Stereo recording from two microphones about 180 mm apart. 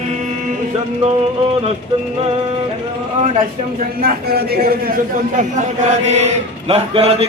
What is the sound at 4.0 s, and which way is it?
Speech, 60° right (ahead or behind).